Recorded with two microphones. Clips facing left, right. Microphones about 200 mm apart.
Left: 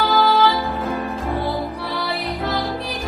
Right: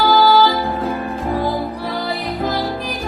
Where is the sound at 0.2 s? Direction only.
30° right (ahead or behind).